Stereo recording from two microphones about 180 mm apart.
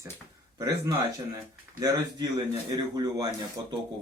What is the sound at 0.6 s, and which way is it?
A man's voice, 20° right (ahead or behind).